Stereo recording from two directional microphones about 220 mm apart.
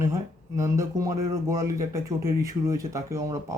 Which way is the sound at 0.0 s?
15° right (ahead or behind).